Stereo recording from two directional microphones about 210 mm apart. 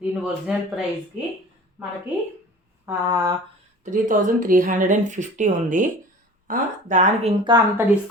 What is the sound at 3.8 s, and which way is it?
Speech, 35° right (ahead or behind).